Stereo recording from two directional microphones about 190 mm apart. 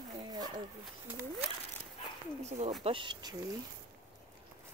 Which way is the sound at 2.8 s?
25° right (ahead or behind).